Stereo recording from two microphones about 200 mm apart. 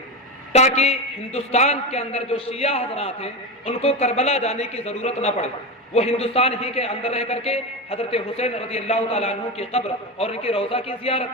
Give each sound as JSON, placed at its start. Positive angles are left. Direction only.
{"t": 0.5, "sound": "a man's voice", "side_deg": 35}